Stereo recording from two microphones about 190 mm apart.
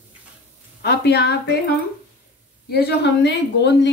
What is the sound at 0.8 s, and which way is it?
Speech, 60° left (ahead or behind).